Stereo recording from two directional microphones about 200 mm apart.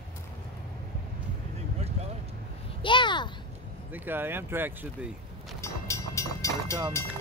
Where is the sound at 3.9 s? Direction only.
10° right (ahead or behind).